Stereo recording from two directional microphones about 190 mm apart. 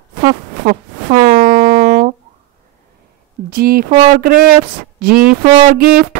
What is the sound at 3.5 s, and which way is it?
Speech, 50° right (ahead or behind).